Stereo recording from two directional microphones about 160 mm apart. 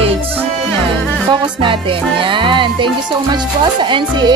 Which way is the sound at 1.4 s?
30° right (ahead or behind).